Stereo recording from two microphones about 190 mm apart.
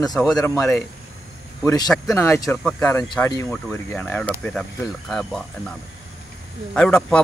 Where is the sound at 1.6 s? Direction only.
15° left (ahead or behind).